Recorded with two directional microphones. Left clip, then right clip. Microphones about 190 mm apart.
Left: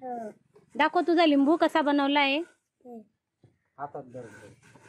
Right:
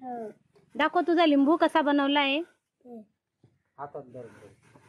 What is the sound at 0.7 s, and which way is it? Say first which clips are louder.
A woman's voice: left 1 dB; centre (ahead or behind).